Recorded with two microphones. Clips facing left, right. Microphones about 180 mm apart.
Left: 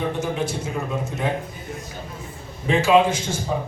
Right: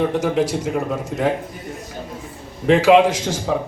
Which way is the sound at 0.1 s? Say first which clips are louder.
Right 6 dB; 90° right.